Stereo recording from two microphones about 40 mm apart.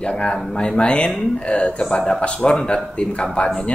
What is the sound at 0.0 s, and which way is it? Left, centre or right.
Speech, left.